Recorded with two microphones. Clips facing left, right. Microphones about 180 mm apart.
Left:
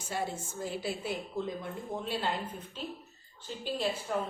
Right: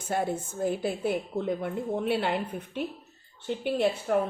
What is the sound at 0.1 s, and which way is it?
A woman's voice, 55° right (ahead or behind).